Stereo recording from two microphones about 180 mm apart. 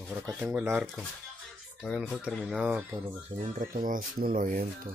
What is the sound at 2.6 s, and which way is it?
Speech, 15° right (ahead or behind).